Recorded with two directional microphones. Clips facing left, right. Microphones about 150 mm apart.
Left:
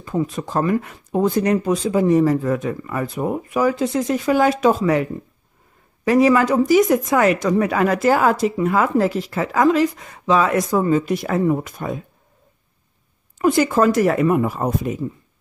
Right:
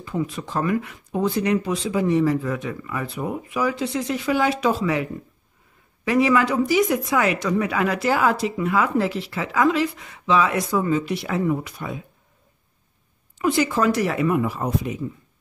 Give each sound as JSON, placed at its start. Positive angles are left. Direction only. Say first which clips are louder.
{"t": 0.0, "sound": "speech", "louder": "left 4 dB", "side_deg": 45}
{"t": 6.0, "sound": "speech", "louder": "left 4 dB", "side_deg": 40}
{"t": 13.4, "sound": "speech", "louder": "left 4 dB", "side_deg": 45}